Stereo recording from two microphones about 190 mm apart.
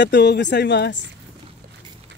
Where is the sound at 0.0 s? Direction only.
65° left (ahead or behind).